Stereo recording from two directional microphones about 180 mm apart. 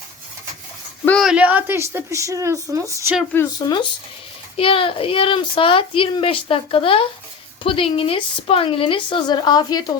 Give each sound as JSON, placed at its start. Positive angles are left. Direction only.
{"t": 1.0, "sound": "a woman's voice", "side_deg": 0}
{"t": 4.5, "sound": "a child's voice", "side_deg": 30}